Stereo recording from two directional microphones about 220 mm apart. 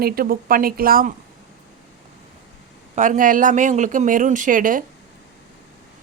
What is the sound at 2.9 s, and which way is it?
A woman's voice, 35° right (ahead or behind).